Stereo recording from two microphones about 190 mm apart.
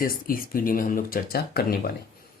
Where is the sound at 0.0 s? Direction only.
50° left (ahead or behind).